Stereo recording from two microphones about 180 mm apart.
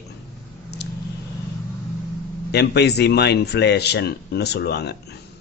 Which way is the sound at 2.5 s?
65° left (ahead or behind).